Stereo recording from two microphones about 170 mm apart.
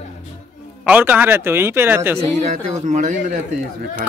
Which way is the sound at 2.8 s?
45° right (ahead or behind).